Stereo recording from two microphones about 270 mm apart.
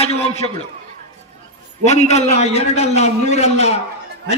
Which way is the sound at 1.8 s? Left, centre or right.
Left.